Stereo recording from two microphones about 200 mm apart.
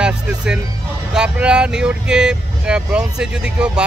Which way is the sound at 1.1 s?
5° right (ahead or behind).